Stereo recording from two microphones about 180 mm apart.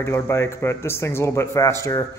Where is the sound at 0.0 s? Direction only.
15° left (ahead or behind).